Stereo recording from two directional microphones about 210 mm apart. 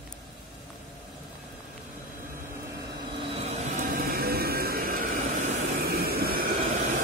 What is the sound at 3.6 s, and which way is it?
Vehicle, 45° right (ahead or behind).